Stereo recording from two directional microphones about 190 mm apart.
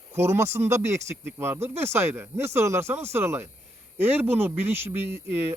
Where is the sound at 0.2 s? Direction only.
15° right (ahead or behind).